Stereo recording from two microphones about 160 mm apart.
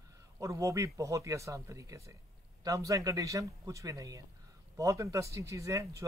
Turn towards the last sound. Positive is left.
turn(degrees=-20)  # may be behind; listen again after turning